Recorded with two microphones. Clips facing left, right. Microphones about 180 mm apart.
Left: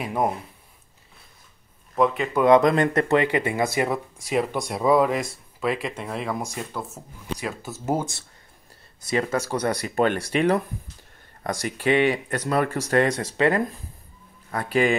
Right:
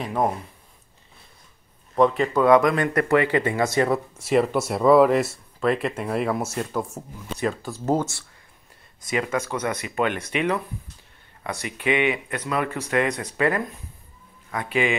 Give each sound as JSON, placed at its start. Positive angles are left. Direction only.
{"t": 0.0, "sound": "speech", "side_deg": 10}
{"t": 2.0, "sound": "speech", "side_deg": 5}
{"t": 2.4, "sound": "speech", "side_deg": 25}
{"t": 3.9, "sound": "speech", "side_deg": 0}
{"t": 7.3, "sound": "speech", "side_deg": 5}
{"t": 9.0, "sound": "speech", "side_deg": 35}
{"t": 11.6, "sound": "speech", "side_deg": 35}
{"t": 13.3, "sound": "speech", "side_deg": 30}